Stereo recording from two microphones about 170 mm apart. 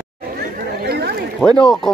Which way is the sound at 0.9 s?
70° right (ahead or behind).